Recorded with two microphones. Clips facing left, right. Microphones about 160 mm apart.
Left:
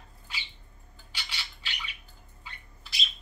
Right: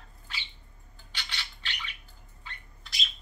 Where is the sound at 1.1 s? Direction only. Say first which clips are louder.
Right 1 dB; 10° left (ahead or behind).